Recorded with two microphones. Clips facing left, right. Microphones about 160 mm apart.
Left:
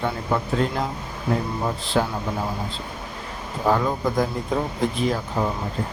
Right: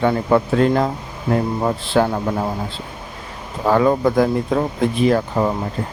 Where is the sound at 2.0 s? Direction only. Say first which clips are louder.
Right 6 dB; 80° right.